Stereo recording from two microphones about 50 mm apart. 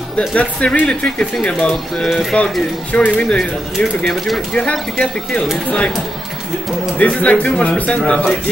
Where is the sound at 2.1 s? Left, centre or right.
Centre.